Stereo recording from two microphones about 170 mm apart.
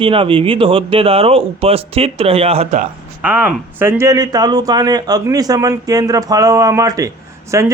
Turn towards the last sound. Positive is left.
turn(degrees=-20)  # may be behind; listen again after turning